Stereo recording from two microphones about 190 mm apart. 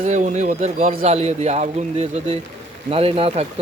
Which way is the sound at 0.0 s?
40° right (ahead or behind).